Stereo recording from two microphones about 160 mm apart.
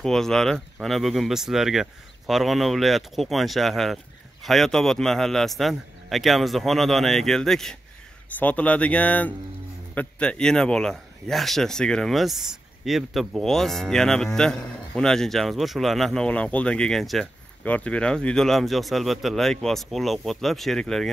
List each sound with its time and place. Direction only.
0.0 s speech: 5° left (ahead or behind)